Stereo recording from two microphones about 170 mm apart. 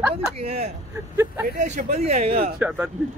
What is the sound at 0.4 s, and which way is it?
Speech, 35° right (ahead or behind).